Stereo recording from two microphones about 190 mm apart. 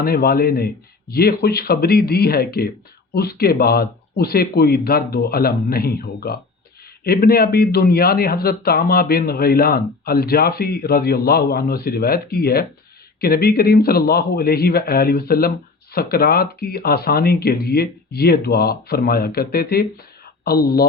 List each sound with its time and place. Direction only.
0.0 s a man's voice: 55° left (ahead or behind)